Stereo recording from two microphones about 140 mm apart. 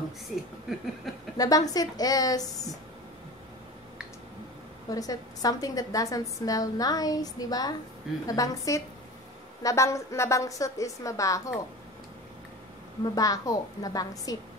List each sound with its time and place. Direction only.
1.1 s a woman's voice: centre (ahead or behind)
1.4 s a woman's voice: 25° left (ahead or behind)
4.8 s a woman's voice: 25° left (ahead or behind)
13.0 s a woman's voice: 25° left (ahead or behind)